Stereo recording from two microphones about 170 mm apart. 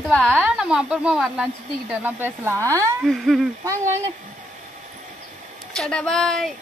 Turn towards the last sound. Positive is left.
turn(degrees=5)  # may be behind; listen again after turning